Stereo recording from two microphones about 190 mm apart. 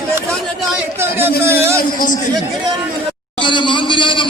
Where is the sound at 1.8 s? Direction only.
45° left (ahead or behind).